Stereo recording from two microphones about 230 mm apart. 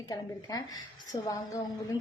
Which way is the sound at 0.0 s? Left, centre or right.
Centre.